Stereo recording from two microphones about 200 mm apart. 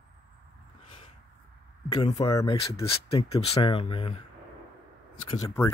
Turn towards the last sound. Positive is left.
turn(degrees=15)  # may be behind; listen again after turning